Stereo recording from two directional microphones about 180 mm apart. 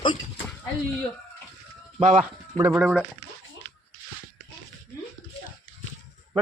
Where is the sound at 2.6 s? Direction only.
10° right (ahead or behind).